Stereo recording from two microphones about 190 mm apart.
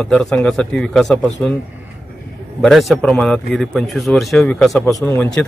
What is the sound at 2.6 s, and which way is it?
Speech, centre (ahead or behind).